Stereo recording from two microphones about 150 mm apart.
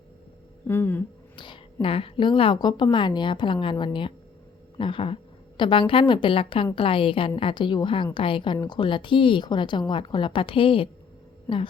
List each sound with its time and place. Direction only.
0.7 s speech: 15° left (ahead or behind)
1.4 s a woman's voice: 35° left (ahead or behind)